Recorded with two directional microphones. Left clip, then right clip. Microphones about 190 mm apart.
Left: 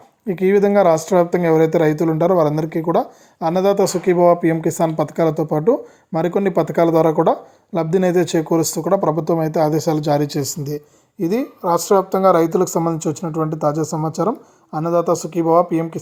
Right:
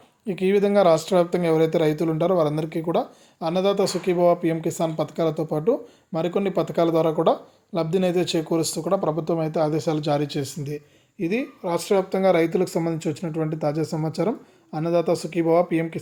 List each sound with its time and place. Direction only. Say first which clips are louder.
0.3 s a woman's voice: left 6 dB; 20° left (ahead or behind)